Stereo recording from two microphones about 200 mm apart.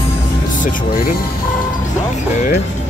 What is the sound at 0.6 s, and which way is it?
Speech, 40° left (ahead or behind).